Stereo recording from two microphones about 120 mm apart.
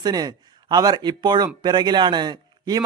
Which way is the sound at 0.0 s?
35° right (ahead or behind).